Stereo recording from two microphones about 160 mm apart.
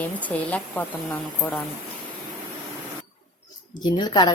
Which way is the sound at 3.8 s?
25° left (ahead or behind).